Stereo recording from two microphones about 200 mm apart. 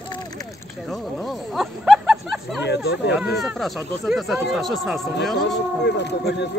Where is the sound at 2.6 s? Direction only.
60° left (ahead or behind).